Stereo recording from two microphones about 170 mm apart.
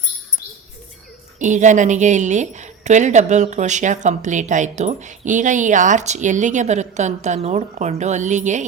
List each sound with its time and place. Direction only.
1.4 s a woman's voice: 45° right (ahead or behind)